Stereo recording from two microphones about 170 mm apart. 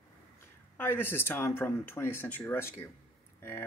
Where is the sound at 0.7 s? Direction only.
10° left (ahead or behind).